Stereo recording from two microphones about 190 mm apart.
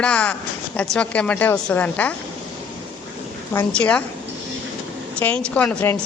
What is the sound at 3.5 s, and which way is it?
Speech, 5° left (ahead or behind).